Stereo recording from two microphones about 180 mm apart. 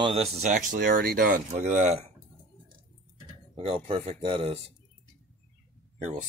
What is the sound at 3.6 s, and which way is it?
Speech, 30° right (ahead or behind).